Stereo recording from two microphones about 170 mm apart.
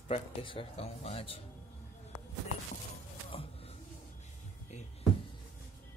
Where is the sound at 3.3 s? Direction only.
35° left (ahead or behind).